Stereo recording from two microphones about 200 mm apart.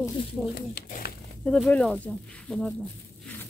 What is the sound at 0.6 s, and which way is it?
Speech, 45° left (ahead or behind).